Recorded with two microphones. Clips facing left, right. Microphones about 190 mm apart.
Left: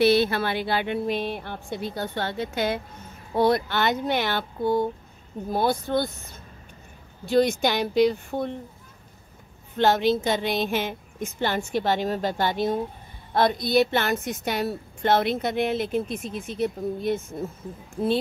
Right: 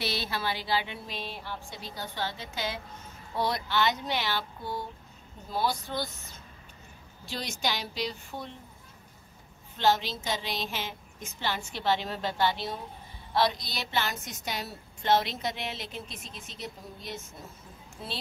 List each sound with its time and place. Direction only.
0.0 s a woman's voice: 55° left (ahead or behind)
7.2 s speech: 55° left (ahead or behind)
9.8 s a woman's voice: 55° left (ahead or behind)